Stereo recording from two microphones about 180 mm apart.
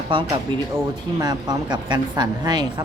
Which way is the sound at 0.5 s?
25° right (ahead or behind).